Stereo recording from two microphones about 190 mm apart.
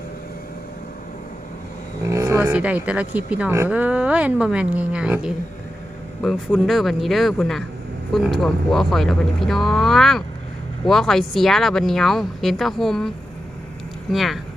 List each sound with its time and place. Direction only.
2.0 s speech: 15° right (ahead or behind); by 13.1 s centre (ahead or behind)
14.1 s speech: centre (ahead or behind)